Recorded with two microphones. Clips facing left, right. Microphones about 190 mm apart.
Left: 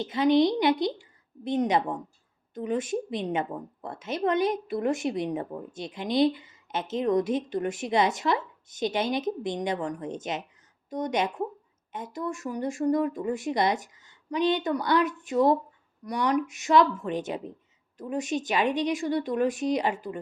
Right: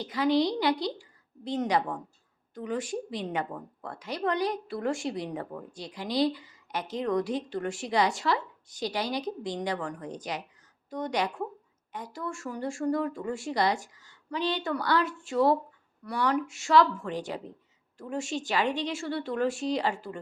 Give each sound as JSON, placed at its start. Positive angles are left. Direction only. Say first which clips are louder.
{"t": 0.0, "sound": "a woman's voice", "louder": "left 4 dB", "side_deg": 25}